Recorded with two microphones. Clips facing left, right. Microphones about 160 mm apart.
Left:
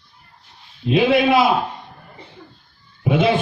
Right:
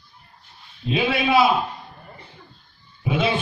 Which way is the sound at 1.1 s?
55° left (ahead or behind).